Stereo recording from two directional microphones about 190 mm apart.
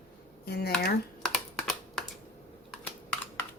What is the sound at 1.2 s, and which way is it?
Computer keyboard, 5° left (ahead or behind).